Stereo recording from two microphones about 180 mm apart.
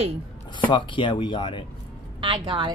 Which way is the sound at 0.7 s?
25° left (ahead or behind).